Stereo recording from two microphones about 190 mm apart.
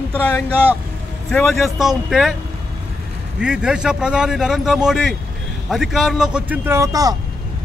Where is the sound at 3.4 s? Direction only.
5° right (ahead or behind).